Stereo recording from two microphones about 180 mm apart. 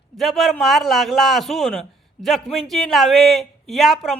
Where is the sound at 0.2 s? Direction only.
Centre (ahead or behind).